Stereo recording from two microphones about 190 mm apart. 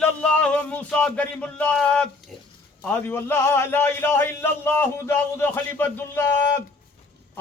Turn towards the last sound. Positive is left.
turn(degrees=15)  # may be behind; listen again after turning